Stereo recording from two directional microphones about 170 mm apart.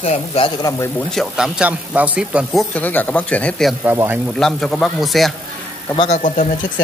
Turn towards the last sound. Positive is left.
turn(degrees=45)  # may be behind; listen again after turning